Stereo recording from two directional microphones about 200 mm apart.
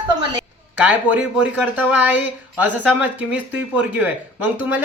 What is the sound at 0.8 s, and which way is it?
Speech, 5° right (ahead or behind).